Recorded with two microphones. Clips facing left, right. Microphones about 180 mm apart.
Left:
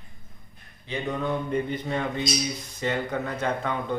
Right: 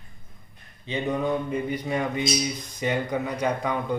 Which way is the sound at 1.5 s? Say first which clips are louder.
Even; 10° right (ahead or behind).